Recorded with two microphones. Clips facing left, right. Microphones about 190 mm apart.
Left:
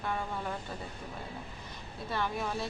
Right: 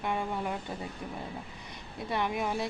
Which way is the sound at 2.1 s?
15° right (ahead or behind).